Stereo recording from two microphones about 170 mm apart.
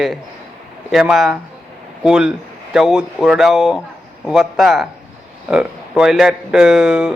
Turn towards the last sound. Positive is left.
turn(degrees=-5)  # may be behind; listen again after turning